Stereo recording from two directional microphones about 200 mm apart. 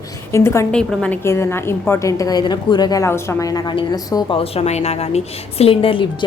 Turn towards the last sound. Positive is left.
turn(degrees=25)  # may be behind; listen again after turning